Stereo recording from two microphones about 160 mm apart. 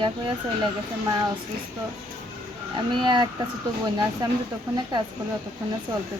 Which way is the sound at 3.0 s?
30° right (ahead or behind).